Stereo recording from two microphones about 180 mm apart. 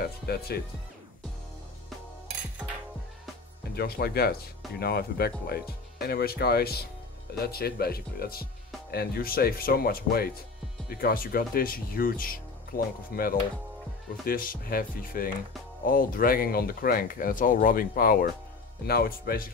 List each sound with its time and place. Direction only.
0.5 s speech: 60° left (ahead or behind)
3.7 s speech: 60° left (ahead or behind)